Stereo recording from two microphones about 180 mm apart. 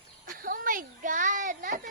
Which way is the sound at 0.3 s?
50° right (ahead or behind).